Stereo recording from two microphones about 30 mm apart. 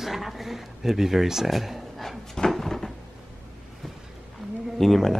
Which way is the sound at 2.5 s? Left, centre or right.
Centre.